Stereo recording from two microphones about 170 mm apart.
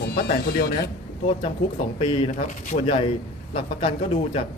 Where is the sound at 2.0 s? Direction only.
30° left (ahead or behind).